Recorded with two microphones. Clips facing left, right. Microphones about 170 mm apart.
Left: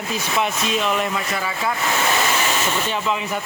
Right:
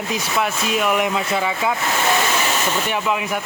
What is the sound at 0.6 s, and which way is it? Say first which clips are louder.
Speech: right 2 dB; 10° right (ahead or behind).